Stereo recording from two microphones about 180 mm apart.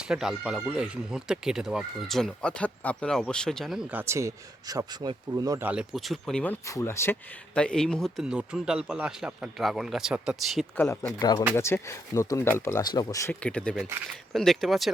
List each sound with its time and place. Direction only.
0.1 s speech: 5° right (ahead or behind)
4.1 s speech: 15° right (ahead or behind)
5.6 s speech: 5° right (ahead or behind)
11.2 s speech: 20° left (ahead or behind)
13.4 s speech: 5° left (ahead or behind)